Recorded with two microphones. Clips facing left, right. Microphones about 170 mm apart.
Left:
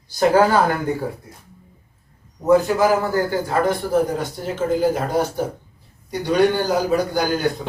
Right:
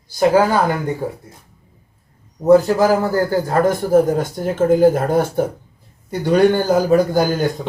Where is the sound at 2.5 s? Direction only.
40° right (ahead or behind).